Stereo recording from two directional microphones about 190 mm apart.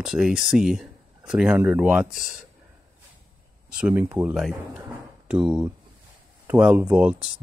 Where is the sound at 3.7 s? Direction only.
5° right (ahead or behind).